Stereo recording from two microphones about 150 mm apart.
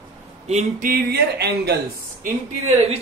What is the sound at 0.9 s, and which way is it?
Speech, 90° right.